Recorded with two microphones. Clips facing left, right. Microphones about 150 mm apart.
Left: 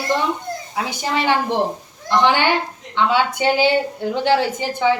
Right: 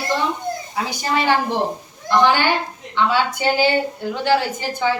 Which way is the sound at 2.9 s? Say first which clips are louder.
Left 1 dB; 20° left (ahead or behind).